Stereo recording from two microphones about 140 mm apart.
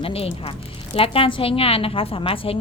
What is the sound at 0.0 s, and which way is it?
Speech, 45° left (ahead or behind).